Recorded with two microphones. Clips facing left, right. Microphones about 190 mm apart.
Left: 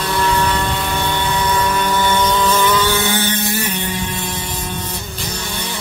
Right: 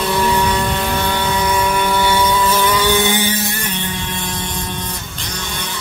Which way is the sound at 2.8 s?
15° right (ahead or behind).